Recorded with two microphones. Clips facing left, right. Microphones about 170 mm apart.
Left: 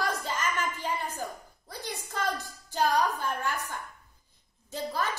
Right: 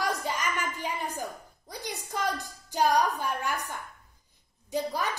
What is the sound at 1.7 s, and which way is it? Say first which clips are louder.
A woman's voice: right 2 dB; 15° right (ahead or behind).